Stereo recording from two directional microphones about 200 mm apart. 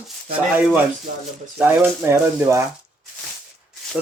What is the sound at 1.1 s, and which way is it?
Speech, 40° right (ahead or behind).